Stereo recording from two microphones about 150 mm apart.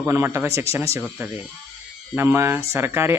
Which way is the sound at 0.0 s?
15° right (ahead or behind).